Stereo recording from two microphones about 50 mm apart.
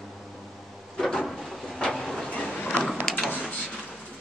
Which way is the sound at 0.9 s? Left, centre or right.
Centre.